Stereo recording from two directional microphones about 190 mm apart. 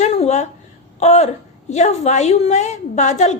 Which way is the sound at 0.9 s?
35° left (ahead or behind).